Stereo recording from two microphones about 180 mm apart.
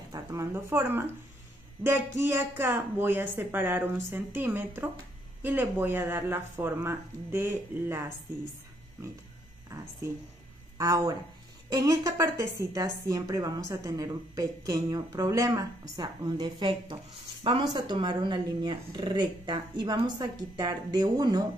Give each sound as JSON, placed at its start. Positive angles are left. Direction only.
{"t": 0.1, "sound": "a woman's voice", "side_deg": -15}
{"t": 9.7, "sound": "a woman's voice", "side_deg": -15}